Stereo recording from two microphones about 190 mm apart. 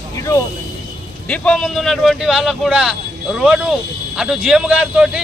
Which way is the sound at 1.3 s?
5° left (ahead or behind).